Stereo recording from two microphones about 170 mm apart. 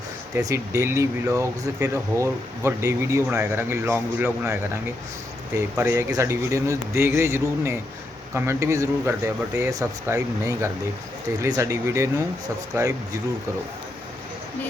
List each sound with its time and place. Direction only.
0.4 s speech: 15° right (ahead or behind)